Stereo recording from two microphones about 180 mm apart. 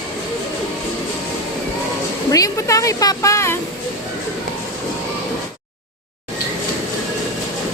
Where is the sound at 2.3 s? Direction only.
20° left (ahead or behind).